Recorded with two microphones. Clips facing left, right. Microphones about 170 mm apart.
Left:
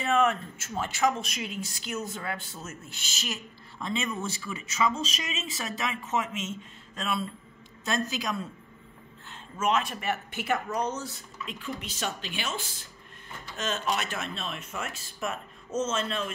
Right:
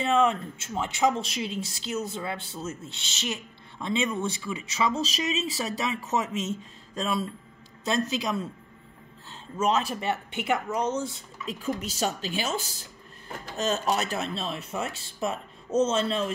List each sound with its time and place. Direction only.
0.0 s speech: 25° right (ahead or behind)
9.6 s speech: 35° right (ahead or behind)
11.4 s speech: 40° right (ahead or behind)